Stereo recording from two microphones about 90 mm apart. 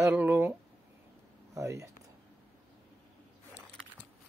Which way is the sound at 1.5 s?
35° right (ahead or behind).